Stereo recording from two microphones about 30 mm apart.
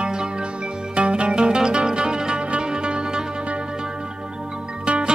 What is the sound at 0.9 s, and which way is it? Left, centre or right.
Music, right.